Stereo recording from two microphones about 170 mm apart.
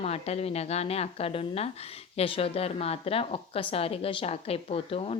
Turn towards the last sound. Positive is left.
turn(degrees=35)  # may be behind; listen again after turning